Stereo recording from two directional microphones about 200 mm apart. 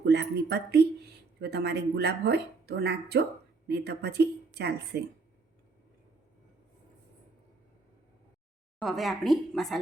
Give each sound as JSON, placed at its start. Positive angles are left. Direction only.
{"t": 0.0, "sound": "speech", "side_deg": -55}
{"t": 8.8, "sound": "a woman's voice", "side_deg": 0}